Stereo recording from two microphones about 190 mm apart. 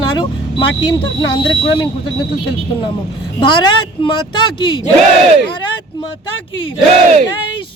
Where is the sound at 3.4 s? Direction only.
25° left (ahead or behind).